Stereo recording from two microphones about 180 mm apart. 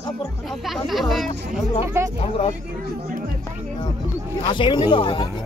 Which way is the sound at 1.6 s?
35° left (ahead or behind).